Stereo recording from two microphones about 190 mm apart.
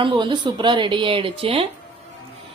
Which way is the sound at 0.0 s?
25° right (ahead or behind).